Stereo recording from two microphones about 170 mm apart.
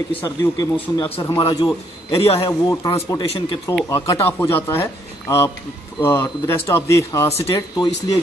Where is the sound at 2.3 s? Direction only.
20° left (ahead or behind).